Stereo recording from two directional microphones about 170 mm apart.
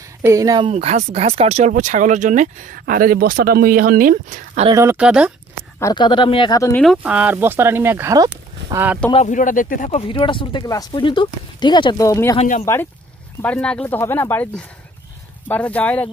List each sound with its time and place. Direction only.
0.2 s speech: 20° right (ahead or behind)
0.7 s speech: 40° right (ahead or behind)
4.6 s speech: 20° right (ahead or behind)
4.9 s speech: 5° right (ahead or behind)
5.8 s speech: 20° left (ahead or behind)
6.7 s speech: centre (ahead or behind); by 8.8 s 20° right (ahead or behind)
9.1 s speech: 45° left (ahead or behind)
9.8 s speech: 35° left (ahead or behind); by 12.4 s 20° left (ahead or behind)
12.4 s speech: 45° left (ahead or behind)
13.4 s speech: 5° left (ahead or behind)